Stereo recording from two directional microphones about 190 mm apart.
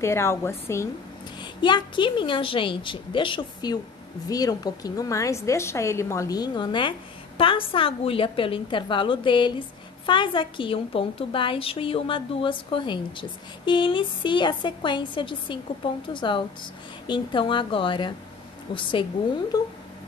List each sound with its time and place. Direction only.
0.0 s a woman's voice: 15° left (ahead or behind)
1.4 s a woman's voice: 25° left (ahead or behind)